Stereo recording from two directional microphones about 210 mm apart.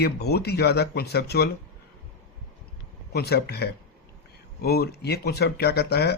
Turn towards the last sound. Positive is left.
turn(degrees=50)  # may be behind; listen again after turning